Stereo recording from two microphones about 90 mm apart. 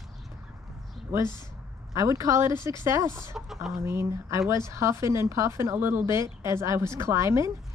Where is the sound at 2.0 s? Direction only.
35° right (ahead or behind).